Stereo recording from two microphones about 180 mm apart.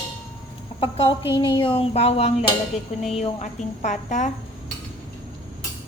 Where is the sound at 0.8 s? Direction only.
30° left (ahead or behind).